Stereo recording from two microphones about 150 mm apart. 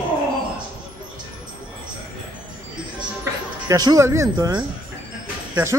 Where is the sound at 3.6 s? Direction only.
25° right (ahead or behind).